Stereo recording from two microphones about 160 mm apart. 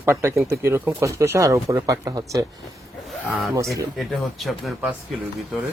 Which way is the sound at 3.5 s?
20° right (ahead or behind).